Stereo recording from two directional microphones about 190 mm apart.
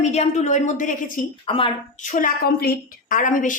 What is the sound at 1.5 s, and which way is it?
Speech, 25° left (ahead or behind).